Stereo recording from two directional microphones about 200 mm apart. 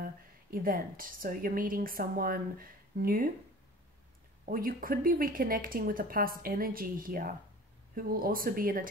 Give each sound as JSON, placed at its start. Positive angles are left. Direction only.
{"t": 0.0, "sound": "a woman's voice", "side_deg": -45}
{"t": 4.5, "sound": "a woman's voice", "side_deg": -45}